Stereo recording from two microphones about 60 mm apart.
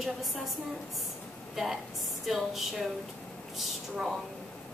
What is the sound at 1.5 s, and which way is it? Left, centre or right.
A woman's voice, centre.